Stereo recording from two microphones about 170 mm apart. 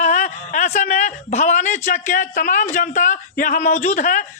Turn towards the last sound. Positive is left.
turn(degrees=50)  # may be behind; listen again after turning